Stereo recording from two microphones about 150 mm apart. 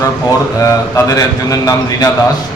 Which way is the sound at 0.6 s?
25° left (ahead or behind).